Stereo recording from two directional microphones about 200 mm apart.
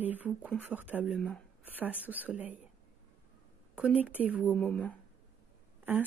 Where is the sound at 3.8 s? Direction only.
5° right (ahead or behind).